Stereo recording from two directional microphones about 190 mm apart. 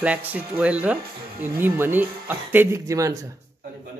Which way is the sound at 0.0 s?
10° right (ahead or behind).